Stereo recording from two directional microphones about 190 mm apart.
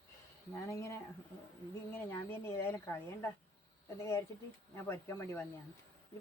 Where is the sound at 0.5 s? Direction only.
15° left (ahead or behind).